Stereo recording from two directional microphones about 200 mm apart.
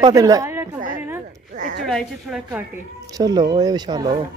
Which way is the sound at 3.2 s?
20° right (ahead or behind).